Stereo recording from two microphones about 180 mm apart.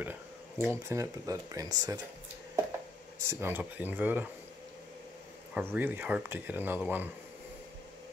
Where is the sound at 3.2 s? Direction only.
10° right (ahead or behind).